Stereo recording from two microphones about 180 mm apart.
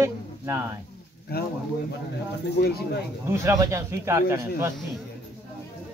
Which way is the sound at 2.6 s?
60° left (ahead or behind).